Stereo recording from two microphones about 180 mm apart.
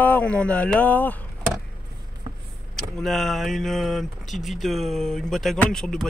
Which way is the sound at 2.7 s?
Centre (ahead or behind).